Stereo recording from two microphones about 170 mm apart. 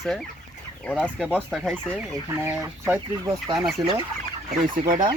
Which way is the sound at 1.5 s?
Centre (ahead or behind).